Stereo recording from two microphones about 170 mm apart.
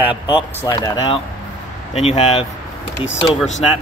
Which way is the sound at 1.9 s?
40° left (ahead or behind).